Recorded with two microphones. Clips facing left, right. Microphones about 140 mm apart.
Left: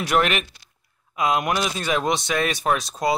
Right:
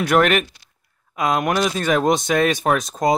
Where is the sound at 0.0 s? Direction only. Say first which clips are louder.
Right 5 dB; 50° right (ahead or behind).